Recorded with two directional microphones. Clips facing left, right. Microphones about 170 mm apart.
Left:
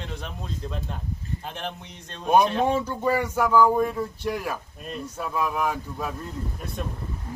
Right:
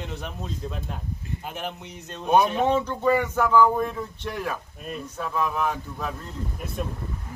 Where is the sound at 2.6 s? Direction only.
10° left (ahead or behind).